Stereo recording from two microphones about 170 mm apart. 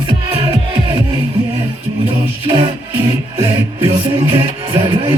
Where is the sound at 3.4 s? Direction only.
30° right (ahead or behind).